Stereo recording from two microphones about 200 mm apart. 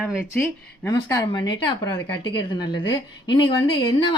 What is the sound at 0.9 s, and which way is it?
Speech, 20° left (ahead or behind).